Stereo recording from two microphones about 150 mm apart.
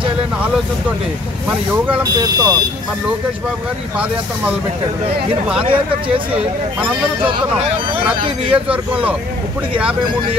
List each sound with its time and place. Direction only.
1.9 s speech: 25° right (ahead or behind)
5.6 s speech: 35° right (ahead or behind)
8.5 s speech: 10° right (ahead or behind)